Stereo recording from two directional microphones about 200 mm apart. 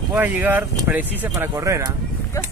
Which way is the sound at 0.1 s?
10° right (ahead or behind).